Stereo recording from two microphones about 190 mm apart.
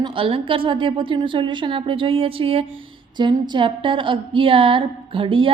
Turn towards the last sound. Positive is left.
turn(degrees=-25)  # may be behind; listen again after turning